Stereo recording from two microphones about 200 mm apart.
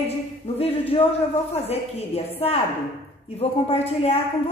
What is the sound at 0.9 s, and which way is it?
A woman's voice, 25° left (ahead or behind).